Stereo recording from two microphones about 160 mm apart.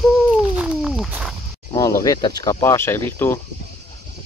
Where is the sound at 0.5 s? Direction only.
5° right (ahead or behind).